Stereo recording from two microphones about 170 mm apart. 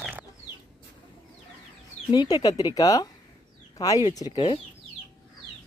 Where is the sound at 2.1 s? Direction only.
20° left (ahead or behind).